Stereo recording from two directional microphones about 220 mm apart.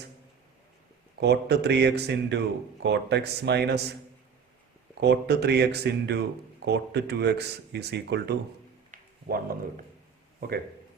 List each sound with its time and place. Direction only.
1.2 s speech: 50° right (ahead or behind)
4.9 s speech: 50° right (ahead or behind)
8.9 s a sound: 35° right (ahead or behind)